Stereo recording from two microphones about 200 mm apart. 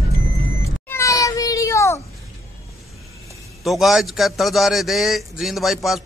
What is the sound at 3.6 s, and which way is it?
A man's voice, centre (ahead or behind).